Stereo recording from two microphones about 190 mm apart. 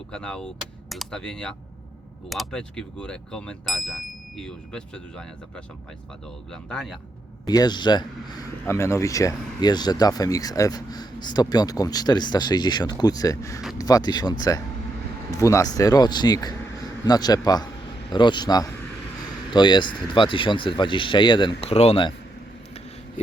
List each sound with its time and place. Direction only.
0.1 s speech: 5° left (ahead or behind)
7.4 s speech: 20° left (ahead or behind)